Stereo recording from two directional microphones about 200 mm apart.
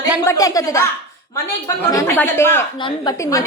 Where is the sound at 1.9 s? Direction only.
15° left (ahead or behind).